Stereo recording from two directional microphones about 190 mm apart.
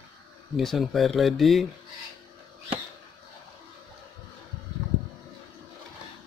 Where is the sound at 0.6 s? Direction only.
Centre (ahead or behind).